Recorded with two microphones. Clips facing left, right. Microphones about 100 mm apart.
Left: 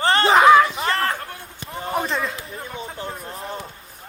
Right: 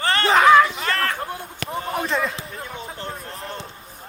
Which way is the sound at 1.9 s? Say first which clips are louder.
Left 1 dB; centre (ahead or behind).